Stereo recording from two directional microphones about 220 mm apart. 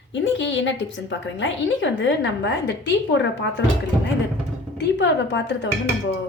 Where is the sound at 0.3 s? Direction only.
55° left (ahead or behind).